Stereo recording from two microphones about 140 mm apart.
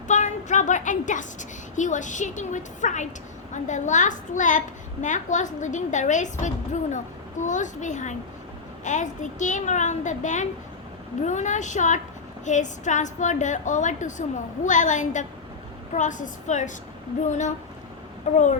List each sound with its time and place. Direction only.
0.1 s a woman's voice: 60° left (ahead or behind)